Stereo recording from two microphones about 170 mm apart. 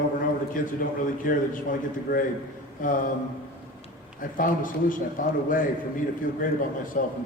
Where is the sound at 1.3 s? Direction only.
55° left (ahead or behind).